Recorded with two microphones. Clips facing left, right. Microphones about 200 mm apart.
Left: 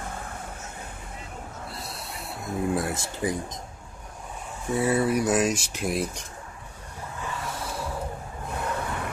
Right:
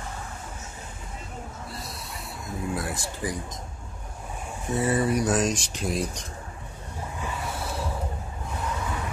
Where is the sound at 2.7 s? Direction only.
25° left (ahead or behind).